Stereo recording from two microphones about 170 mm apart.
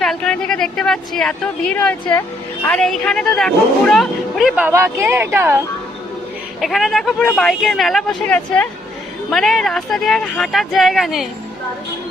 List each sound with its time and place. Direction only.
0.0 s speech: 5° left (ahead or behind); by 5.6 s 15° right (ahead or behind)
6.6 s speech: centre (ahead or behind)